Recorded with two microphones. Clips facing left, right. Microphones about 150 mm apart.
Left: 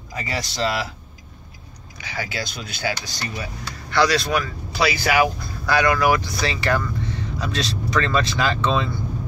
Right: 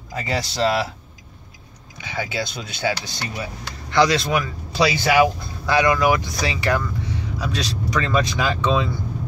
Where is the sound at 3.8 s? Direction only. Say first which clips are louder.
Right 2 dB; 20° right (ahead or behind).